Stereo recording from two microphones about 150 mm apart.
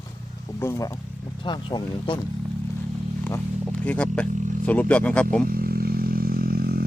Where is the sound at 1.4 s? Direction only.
30° left (ahead or behind).